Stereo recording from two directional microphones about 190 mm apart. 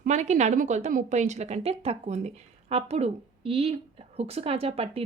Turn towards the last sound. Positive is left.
turn(degrees=-30)  # may be behind; listen again after turning